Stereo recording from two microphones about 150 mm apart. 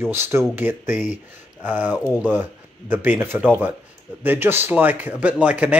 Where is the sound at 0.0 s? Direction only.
15° right (ahead or behind).